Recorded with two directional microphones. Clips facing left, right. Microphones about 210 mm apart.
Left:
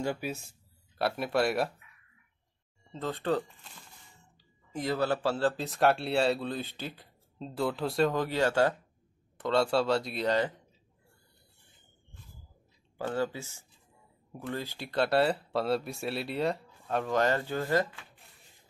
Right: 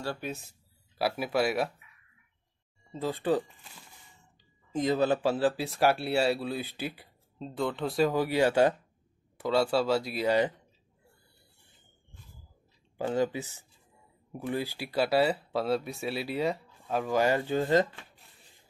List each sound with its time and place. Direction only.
0.0 s speech: 15° left (ahead or behind)
0.9 s speech: 5° right (ahead or behind)
2.9 s speech: 10° right (ahead or behind)
4.7 s speech: 20° right (ahead or behind)
5.7 s speech: 5° right (ahead or behind)
9.4 s speech: 5° right (ahead or behind)
12.9 s speech: 15° right (ahead or behind)